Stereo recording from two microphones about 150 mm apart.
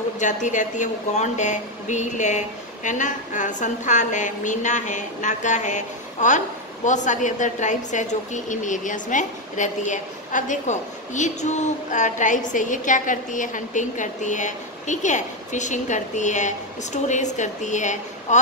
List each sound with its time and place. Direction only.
0.2 s a woman's voice: 55° left (ahead or behind)